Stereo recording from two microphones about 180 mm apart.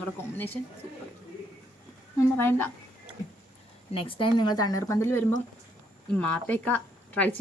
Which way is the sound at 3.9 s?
30° left (ahead or behind).